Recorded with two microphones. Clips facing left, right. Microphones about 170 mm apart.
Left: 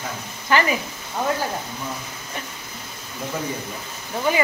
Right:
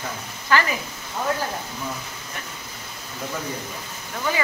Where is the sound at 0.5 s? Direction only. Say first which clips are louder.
Left 1 dB; 20° left (ahead or behind).